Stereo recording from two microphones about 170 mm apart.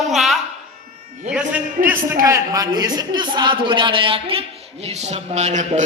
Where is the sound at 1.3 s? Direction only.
5° right (ahead or behind).